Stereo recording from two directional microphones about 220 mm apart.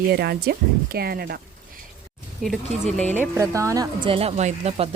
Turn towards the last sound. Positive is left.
turn(degrees=-30)  # may be behind; listen again after turning